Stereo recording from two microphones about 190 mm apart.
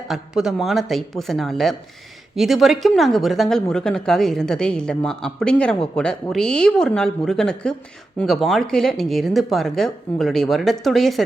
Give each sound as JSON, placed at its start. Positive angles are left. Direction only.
{"t": 0.1, "sound": "speech", "side_deg": 0}